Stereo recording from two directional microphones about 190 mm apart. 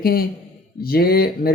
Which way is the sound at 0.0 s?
55° left (ahead or behind).